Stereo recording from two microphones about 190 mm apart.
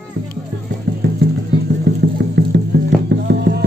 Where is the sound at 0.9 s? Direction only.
60° right (ahead or behind).